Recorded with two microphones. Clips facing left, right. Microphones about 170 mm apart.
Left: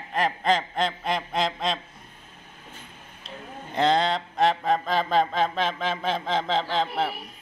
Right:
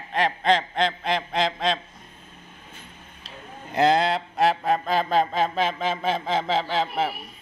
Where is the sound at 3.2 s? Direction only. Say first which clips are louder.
Left 2 dB; 5° right (ahead or behind).